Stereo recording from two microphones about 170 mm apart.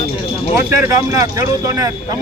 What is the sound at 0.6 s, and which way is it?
Speech, 20° right (ahead or behind).